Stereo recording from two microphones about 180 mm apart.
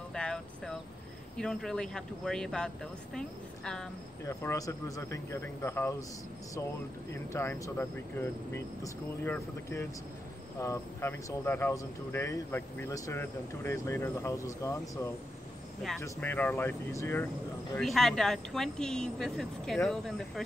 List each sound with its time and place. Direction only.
0.1 s a sound: 5° left (ahead or behind)
1.3 s speech: 5° left (ahead or behind)
4.3 s speech: 15° left (ahead or behind)
7.3 s speech: 15° left (ahead or behind)
17.7 s speech: centre (ahead or behind)